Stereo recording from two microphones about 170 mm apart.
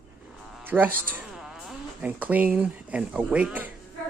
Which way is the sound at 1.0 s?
5° right (ahead or behind).